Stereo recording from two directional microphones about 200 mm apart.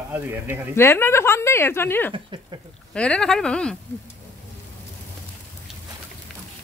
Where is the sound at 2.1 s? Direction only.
25° right (ahead or behind).